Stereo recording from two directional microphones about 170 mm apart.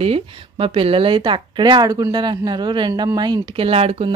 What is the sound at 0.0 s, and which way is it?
Speech, 35° right (ahead or behind).